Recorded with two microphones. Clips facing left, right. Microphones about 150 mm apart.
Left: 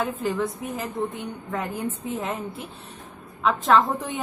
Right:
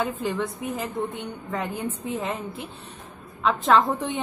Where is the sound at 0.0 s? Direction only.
Centre (ahead or behind).